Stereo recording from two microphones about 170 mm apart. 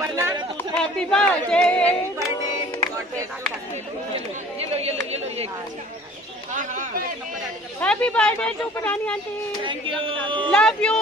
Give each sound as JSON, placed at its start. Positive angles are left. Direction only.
{"t": 0.0, "sound": "a sound", "side_deg": -15}
{"t": 0.7, "sound": "speech", "side_deg": 5}
{"t": 4.7, "sound": "speech", "side_deg": -35}
{"t": 6.5, "sound": "speech", "side_deg": -50}
{"t": 7.8, "sound": "speech", "side_deg": 10}
{"t": 10.0, "sound": "a man's voice", "side_deg": -30}
{"t": 10.5, "sound": "speech", "side_deg": 5}